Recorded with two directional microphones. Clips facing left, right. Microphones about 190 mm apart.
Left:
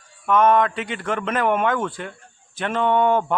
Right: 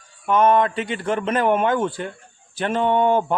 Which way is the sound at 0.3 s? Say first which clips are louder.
Even; 30° right (ahead or behind).